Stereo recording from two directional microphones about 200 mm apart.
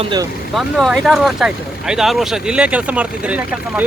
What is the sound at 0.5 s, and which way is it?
Speech, centre (ahead or behind).